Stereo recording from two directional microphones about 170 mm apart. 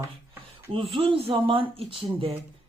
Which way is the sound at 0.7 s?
30° right (ahead or behind).